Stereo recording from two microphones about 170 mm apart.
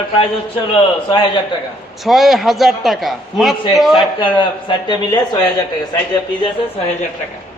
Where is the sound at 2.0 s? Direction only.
Centre (ahead or behind).